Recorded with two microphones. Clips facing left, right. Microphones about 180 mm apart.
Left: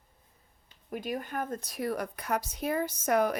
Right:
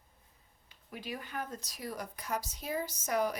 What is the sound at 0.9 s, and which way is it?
A woman's voice, 45° left (ahead or behind).